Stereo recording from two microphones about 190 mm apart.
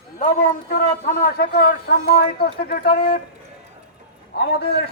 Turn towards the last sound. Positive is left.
turn(degrees=60)  # may be behind; listen again after turning